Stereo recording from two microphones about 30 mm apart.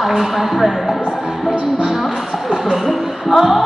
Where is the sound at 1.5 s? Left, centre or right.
Right.